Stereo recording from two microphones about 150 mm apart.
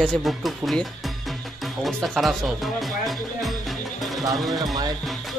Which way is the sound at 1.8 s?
Centre (ahead or behind).